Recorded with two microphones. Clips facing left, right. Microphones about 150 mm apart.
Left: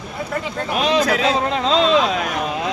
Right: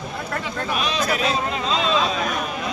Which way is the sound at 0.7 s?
75° left (ahead or behind).